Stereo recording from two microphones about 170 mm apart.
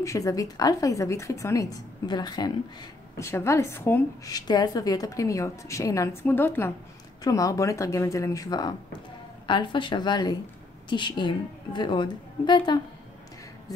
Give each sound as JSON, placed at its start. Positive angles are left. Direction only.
{"t": 0.0, "sound": "a woman's voice", "side_deg": 20}